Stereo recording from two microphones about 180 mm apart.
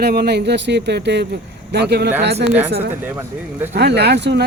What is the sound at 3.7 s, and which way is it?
Speech, 65° right (ahead or behind).